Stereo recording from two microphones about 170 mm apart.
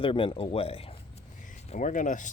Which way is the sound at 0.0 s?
30° left (ahead or behind).